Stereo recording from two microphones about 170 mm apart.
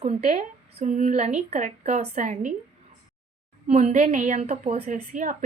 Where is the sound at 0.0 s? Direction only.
45° right (ahead or behind).